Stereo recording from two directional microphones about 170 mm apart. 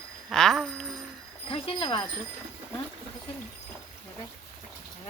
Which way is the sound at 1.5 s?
35° left (ahead or behind).